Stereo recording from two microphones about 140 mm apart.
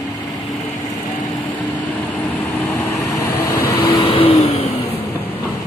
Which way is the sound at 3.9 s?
40° left (ahead or behind).